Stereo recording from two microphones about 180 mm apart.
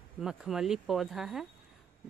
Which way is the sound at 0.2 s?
5° right (ahead or behind).